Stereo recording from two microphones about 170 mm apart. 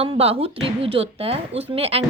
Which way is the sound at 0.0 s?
35° right (ahead or behind).